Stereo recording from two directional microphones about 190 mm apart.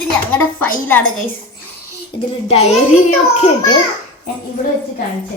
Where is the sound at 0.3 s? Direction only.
10° left (ahead or behind).